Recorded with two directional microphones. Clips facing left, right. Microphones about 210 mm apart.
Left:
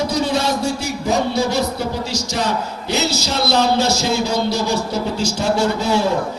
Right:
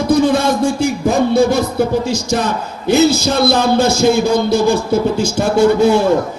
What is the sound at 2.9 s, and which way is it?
A man's voice, 50° right (ahead or behind).